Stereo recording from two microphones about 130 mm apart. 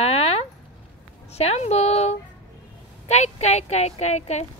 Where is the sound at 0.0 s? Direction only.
50° left (ahead or behind).